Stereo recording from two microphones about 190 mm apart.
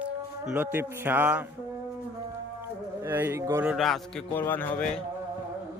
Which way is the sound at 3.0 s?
10° right (ahead or behind).